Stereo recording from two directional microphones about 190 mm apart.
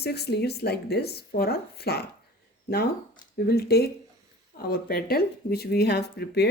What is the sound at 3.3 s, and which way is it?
Speech, 55° left (ahead or behind).